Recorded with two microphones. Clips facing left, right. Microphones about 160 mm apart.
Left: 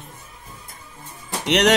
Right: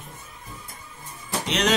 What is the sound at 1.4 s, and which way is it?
Speech, 70° left (ahead or behind).